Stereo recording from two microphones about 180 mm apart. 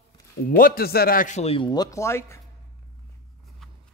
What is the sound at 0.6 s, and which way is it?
A man's voice, 60° left (ahead or behind).